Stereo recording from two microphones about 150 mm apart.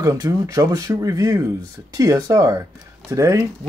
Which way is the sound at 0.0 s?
20° right (ahead or behind).